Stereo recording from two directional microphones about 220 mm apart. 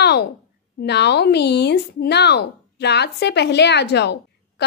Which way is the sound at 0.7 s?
50° left (ahead or behind).